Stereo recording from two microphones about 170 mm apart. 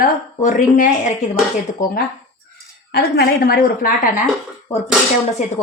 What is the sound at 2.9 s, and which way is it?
Speech, 65° left (ahead or behind).